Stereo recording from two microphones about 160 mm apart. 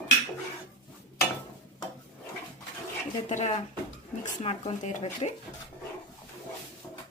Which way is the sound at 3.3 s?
45° left (ahead or behind).